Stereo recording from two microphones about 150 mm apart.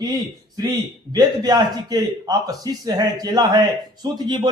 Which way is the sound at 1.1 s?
25° right (ahead or behind).